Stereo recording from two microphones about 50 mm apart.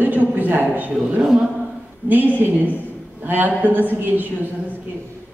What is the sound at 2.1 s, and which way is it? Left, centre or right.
Speech, right.